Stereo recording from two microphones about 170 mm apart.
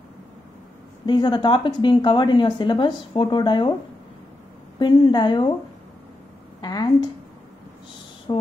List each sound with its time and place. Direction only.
1.0 s speech: 25° left (ahead or behind)
4.7 s speech: 25° left (ahead or behind)
6.6 s speech: 25° left (ahead or behind)
8.3 s music: 25° left (ahead or behind)